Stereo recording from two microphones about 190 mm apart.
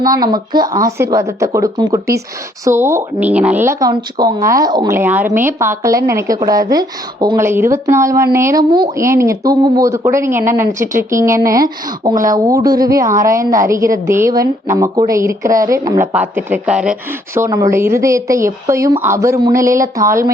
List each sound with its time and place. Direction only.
0.0 s speech: 20° right (ahead or behind)